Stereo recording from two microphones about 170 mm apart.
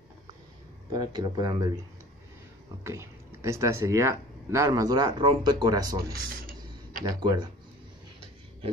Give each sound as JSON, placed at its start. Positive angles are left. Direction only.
{"t": 0.9, "sound": "speech", "side_deg": -25}
{"t": 2.8, "sound": "speech", "side_deg": -15}
{"t": 6.4, "sound": "a sound", "side_deg": -55}
{"t": 7.1, "sound": "speech", "side_deg": -25}